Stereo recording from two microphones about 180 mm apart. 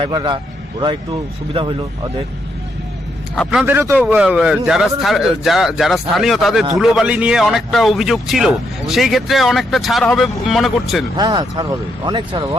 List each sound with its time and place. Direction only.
0.0 s speech: 25° right (ahead or behind)
3.3 s a man's voice: 5° left (ahead or behind)
3.6 s a man's voice: 10° right (ahead or behind)
11.2 s speech: 25° right (ahead or behind)